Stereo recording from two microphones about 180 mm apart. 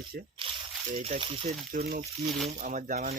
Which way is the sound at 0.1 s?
55° right (ahead or behind).